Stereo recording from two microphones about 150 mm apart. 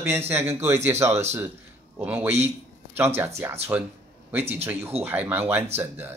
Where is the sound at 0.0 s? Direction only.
15° right (ahead or behind).